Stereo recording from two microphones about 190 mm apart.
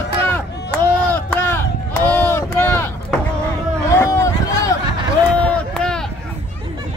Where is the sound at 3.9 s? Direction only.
15° left (ahead or behind).